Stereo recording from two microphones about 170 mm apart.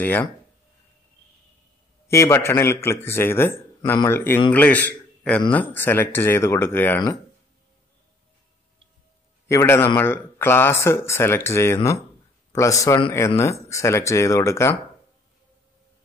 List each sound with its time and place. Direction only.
0.0 s speech: 10° left (ahead or behind)
2.0 s a man's voice: 15° left (ahead or behind)
9.5 s a man's voice: 15° left (ahead or behind)